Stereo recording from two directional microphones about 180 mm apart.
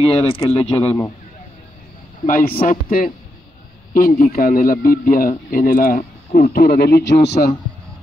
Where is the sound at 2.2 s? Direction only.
50° left (ahead or behind); by 7.4 s 70° left (ahead or behind).